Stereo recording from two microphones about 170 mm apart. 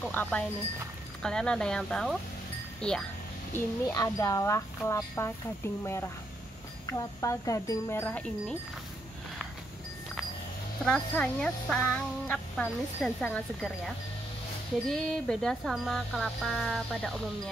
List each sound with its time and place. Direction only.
0.0 s wind chime: 10° left (ahead or behind)
1.2 s speech: 5° left (ahead or behind)
3.5 s speech: 20° left (ahead or behind)
6.9 s speech: 20° left (ahead or behind)
8.0 s wind chime: 5° left (ahead or behind)
10.9 s speech: 5° left (ahead or behind)